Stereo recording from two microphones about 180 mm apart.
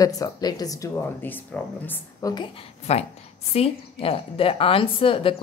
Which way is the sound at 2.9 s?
35° left (ahead or behind).